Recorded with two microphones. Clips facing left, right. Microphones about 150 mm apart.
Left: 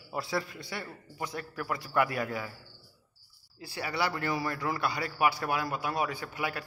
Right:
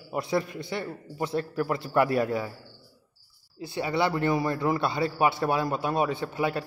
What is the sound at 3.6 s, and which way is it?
A man's voice, 20° right (ahead or behind).